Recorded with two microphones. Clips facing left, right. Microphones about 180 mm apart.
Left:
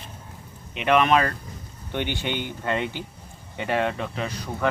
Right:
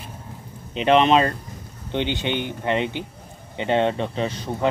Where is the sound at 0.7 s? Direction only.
30° right (ahead or behind).